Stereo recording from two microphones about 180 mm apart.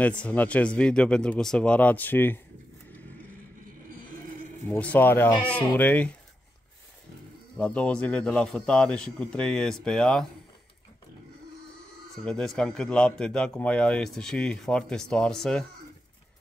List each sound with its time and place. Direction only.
0.0 s speech: 5° left (ahead or behind)
4.6 s speech: 10° left (ahead or behind)
7.5 s a man's voice: 5° left (ahead or behind)
12.3 s a man's voice: 5° left (ahead or behind)